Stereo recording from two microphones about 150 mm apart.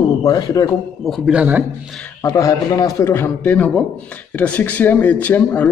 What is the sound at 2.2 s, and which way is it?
A man's voice, 20° left (ahead or behind).